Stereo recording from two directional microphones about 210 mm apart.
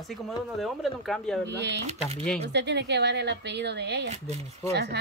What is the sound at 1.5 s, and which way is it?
Speech, 55° right (ahead or behind).